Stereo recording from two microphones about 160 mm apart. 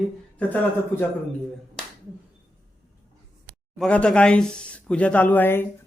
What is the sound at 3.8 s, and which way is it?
Speech, 5° left (ahead or behind).